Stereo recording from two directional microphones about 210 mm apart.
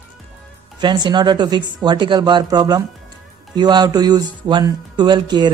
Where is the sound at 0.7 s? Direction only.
20° right (ahead or behind).